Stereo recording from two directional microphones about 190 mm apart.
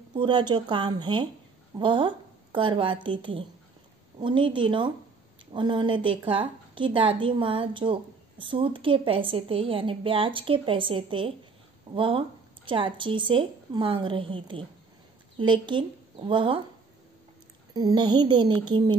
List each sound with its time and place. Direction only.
0.1 s a woman's voice: 25° right (ahead or behind)
17.7 s a woman's voice: 25° right (ahead or behind)